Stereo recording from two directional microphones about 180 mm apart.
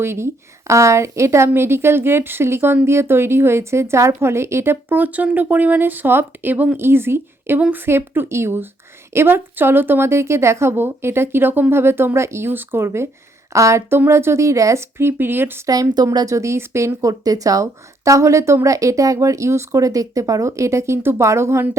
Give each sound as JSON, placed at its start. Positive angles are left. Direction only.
{"t": 0.0, "sound": "a woman's voice", "side_deg": -15}